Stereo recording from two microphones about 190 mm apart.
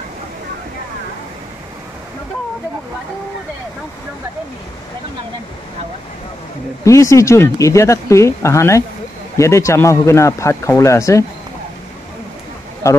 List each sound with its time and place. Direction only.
6.8 s speech: 15° left (ahead or behind)
12.8 s speech: 15° left (ahead or behind)